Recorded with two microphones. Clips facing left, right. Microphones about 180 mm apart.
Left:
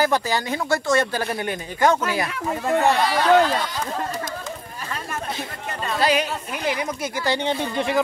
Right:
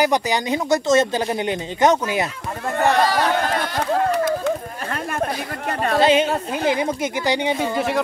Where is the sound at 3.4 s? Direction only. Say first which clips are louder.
Right 3 dB; 60° right (ahead or behind).